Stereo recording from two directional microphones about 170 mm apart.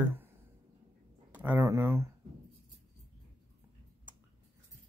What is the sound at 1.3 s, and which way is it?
Speech, 10° right (ahead or behind).